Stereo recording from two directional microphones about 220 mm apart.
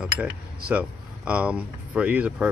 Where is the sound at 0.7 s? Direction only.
5° right (ahead or behind).